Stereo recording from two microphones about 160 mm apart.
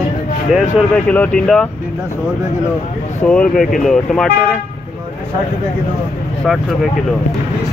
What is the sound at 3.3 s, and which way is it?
Speech, 5° left (ahead or behind).